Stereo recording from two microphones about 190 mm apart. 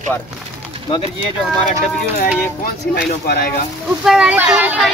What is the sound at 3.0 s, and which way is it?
Speech, 55° left (ahead or behind).